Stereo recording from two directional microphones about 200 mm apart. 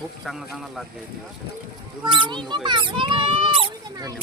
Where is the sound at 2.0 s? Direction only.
25° right (ahead or behind).